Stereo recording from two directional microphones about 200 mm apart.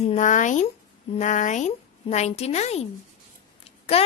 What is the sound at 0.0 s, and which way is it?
A woman's voice, 35° left (ahead or behind).